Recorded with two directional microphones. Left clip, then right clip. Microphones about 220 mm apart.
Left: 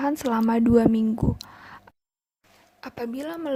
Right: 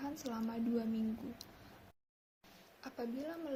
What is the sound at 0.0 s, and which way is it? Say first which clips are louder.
Speech: left 19 dB; 40° left (ahead or behind).